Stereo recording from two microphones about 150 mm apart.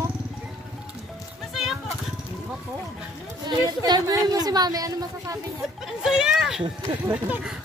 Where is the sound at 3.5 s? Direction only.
25° right (ahead or behind).